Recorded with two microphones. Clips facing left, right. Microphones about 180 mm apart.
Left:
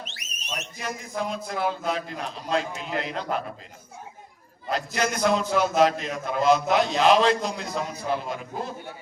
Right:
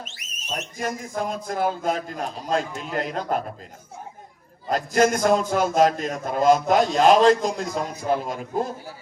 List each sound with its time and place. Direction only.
0.5 s a man's voice: 45° right (ahead or behind)
4.7 s a man's voice: 45° right (ahead or behind)